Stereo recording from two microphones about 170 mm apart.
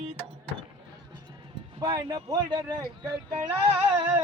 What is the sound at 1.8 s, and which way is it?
Speech, 25° right (ahead or behind).